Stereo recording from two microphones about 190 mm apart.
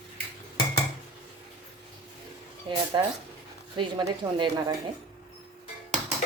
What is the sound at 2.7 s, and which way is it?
A woman's voice, 25° right (ahead or behind).